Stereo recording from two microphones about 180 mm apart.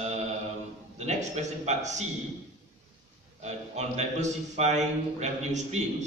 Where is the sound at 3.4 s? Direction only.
40° right (ahead or behind).